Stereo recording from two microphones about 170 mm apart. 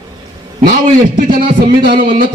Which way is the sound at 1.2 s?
55° right (ahead or behind).